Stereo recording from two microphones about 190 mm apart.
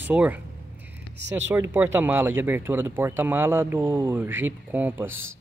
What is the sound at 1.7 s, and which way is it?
Speech, 10° right (ahead or behind).